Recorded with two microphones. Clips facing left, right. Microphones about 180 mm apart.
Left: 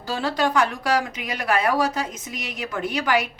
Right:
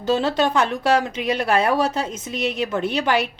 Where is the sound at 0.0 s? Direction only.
20° right (ahead or behind).